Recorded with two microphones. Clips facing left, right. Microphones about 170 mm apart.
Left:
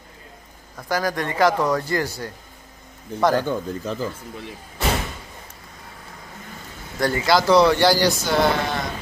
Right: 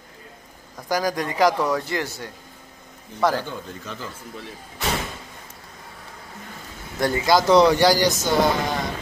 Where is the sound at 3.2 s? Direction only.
5° right (ahead or behind).